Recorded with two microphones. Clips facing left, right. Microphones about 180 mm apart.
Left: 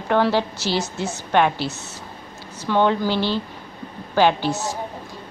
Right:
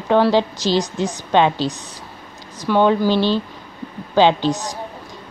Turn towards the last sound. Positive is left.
turn(degrees=-15)  # may be behind; listen again after turning